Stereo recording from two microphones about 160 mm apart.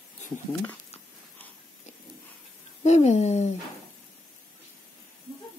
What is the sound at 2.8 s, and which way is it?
Speech, 45° left (ahead or behind).